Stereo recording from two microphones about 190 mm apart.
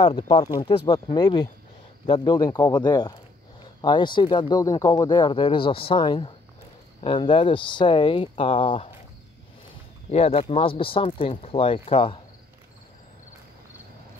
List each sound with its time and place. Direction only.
0.0 s speech: 25° left (ahead or behind)
10.1 s speech: 30° left (ahead or behind)